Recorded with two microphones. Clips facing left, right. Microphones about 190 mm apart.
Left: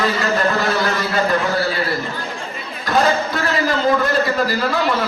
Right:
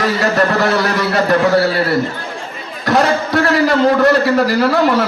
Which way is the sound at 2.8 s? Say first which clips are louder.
Right 3 dB; 75° right (ahead or behind).